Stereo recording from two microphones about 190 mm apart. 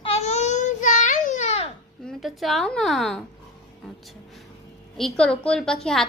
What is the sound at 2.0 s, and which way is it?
A woman's voice, centre (ahead or behind).